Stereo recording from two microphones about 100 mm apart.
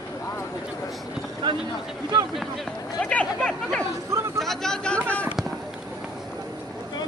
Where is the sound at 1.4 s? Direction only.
50° right (ahead or behind).